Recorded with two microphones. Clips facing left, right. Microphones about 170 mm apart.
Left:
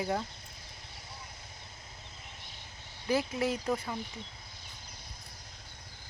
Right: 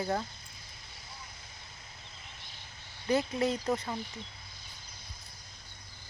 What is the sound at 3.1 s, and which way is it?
Speech, 5° left (ahead or behind).